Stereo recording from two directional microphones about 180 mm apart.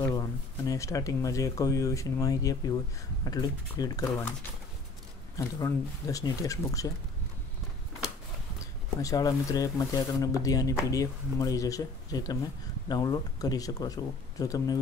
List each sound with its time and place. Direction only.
0.1 s speech: 20° left (ahead or behind)
5.3 s speech: 20° left (ahead or behind)
9.0 s speech: 20° left (ahead or behind)